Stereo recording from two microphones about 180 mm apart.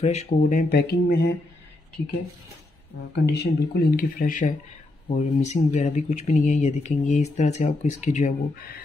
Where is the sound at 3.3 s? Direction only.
65° left (ahead or behind).